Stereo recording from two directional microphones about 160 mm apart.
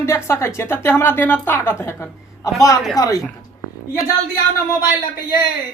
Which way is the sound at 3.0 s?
20° left (ahead or behind).